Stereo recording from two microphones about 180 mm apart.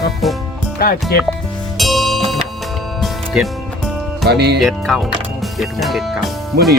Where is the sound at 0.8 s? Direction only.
55° left (ahead or behind).